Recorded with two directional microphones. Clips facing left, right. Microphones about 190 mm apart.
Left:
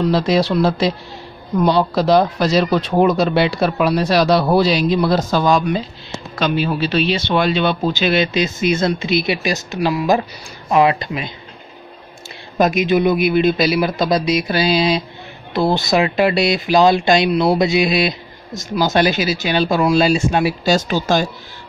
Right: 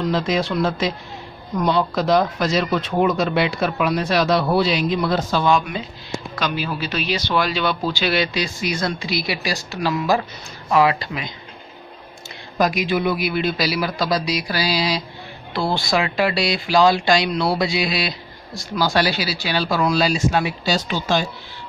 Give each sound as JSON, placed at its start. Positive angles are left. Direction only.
{"t": 0.0, "sound": "speech", "side_deg": 35}
{"t": 6.3, "sound": "speech", "side_deg": 25}
{"t": 12.5, "sound": "speech", "side_deg": 25}
{"t": 20.6, "sound": "speech", "side_deg": 45}